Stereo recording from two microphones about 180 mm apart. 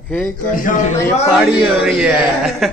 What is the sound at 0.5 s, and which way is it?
Speech, 45° left (ahead or behind).